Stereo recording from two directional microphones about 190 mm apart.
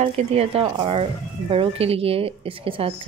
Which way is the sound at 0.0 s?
30° right (ahead or behind).